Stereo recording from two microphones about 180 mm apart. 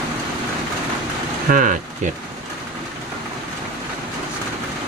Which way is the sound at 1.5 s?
45° right (ahead or behind).